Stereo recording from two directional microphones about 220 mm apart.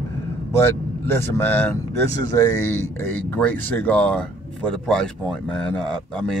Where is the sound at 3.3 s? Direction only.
5° left (ahead or behind).